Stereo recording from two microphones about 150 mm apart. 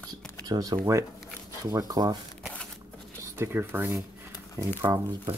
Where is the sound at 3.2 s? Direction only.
15° right (ahead or behind).